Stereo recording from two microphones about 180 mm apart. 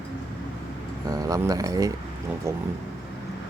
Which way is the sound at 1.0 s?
20° right (ahead or behind).